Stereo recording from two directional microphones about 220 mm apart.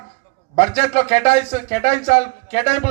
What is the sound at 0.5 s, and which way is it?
A man's voice, 30° left (ahead or behind).